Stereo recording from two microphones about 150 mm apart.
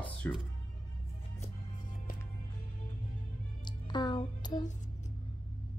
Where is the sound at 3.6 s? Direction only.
30° left (ahead or behind).